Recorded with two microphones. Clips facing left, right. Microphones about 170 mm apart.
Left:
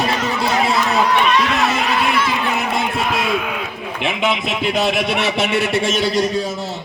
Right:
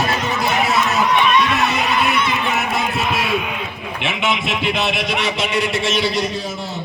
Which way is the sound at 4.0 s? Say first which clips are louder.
Left 2 dB; 35° left (ahead or behind).